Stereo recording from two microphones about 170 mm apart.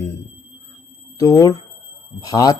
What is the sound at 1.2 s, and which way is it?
Speech, 20° left (ahead or behind).